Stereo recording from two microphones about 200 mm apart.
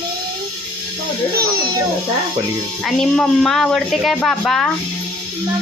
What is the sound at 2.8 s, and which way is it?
Speech, centre (ahead or behind).